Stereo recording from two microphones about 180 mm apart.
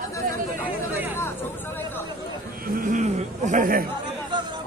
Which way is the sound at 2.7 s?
50° right (ahead or behind).